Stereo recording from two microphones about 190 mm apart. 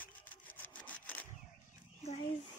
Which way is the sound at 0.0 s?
10° left (ahead or behind).